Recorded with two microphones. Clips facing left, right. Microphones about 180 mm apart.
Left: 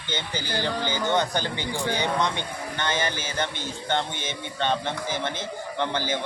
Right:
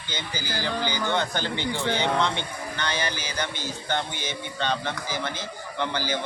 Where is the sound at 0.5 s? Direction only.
20° left (ahead or behind).